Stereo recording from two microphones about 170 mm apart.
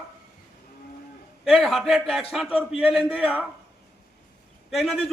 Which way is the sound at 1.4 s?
Centre (ahead or behind).